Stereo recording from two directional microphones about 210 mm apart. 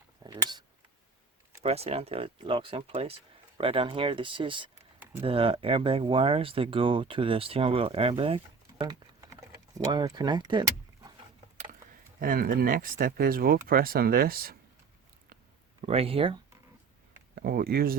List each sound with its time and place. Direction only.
0.2 s a sound: 20° right (ahead or behind)
1.6 s speech: 30° right (ahead or behind)
8.6 s typing: 20° right (ahead or behind)
12.2 s speech: 40° right (ahead or behind)
15.8 s speech: 30° right (ahead or behind)
17.3 s speech: 45° right (ahead or behind)